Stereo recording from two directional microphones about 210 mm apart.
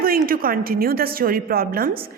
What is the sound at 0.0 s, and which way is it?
A woman's voice, 45° right (ahead or behind).